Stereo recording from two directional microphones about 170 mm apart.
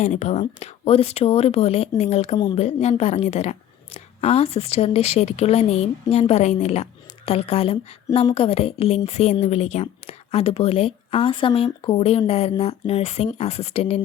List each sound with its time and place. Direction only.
0.0 s a woman's voice: 45° left (ahead or behind)